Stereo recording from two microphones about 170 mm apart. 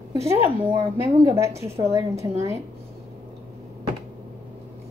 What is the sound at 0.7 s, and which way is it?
Speech, 30° right (ahead or behind).